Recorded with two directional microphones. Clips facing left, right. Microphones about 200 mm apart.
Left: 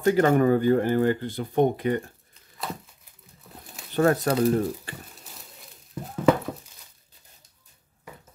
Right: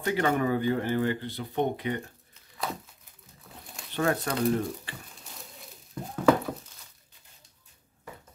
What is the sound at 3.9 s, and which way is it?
Speech, 40° left (ahead or behind).